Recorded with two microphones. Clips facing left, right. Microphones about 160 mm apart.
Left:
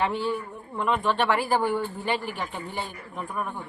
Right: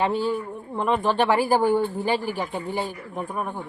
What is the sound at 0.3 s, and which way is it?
Speech, 30° right (ahead or behind).